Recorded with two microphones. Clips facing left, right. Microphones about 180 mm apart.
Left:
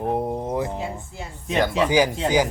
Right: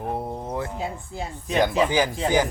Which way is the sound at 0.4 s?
15° left (ahead or behind).